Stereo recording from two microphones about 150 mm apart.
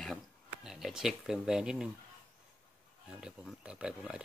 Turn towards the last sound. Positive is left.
turn(degrees=-5)  # may be behind; listen again after turning